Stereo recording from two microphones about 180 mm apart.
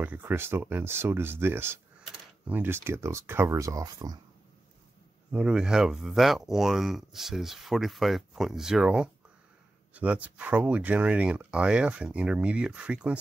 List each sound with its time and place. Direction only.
0.0 s speech: 10° right (ahead or behind)
5.3 s speech: 5° right (ahead or behind)